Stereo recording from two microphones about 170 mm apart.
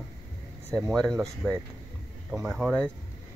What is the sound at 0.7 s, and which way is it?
Speech, centre (ahead or behind).